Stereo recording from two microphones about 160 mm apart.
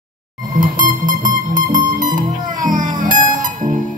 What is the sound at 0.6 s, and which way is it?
Music, 55° right (ahead or behind).